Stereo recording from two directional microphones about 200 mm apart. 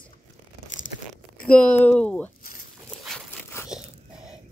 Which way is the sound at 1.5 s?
5° left (ahead or behind).